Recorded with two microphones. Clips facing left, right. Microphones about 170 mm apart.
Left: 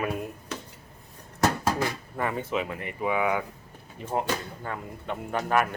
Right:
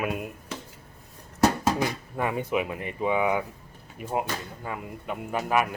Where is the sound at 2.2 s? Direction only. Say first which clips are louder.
Right 2 dB; 15° right (ahead or behind).